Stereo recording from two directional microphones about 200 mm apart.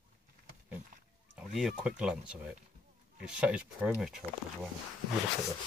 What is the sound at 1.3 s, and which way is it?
Speech, 5° right (ahead or behind).